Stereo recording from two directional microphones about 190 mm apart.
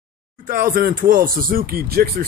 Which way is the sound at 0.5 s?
45° right (ahead or behind).